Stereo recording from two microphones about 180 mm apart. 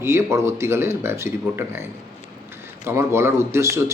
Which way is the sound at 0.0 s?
15° right (ahead or behind).